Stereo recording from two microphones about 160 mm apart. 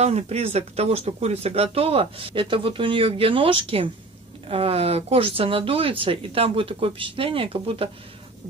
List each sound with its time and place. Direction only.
0.0 s speech: 40° right (ahead or behind)